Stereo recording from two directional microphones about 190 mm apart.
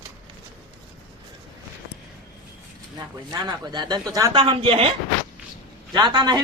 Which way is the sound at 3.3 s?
20° right (ahead or behind).